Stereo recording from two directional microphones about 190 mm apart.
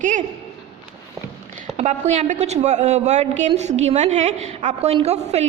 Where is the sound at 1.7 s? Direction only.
35° right (ahead or behind).